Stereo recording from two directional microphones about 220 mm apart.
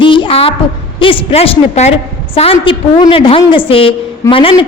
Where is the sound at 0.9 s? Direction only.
25° left (ahead or behind).